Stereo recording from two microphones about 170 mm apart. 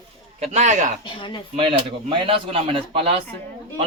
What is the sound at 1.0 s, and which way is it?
Speech, 30° left (ahead or behind).